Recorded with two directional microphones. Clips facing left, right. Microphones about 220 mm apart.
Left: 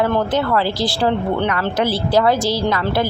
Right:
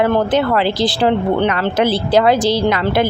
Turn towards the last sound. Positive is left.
turn(degrees=-20)  # may be behind; listen again after turning